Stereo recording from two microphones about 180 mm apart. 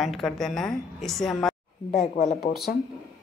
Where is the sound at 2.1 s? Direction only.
60° left (ahead or behind).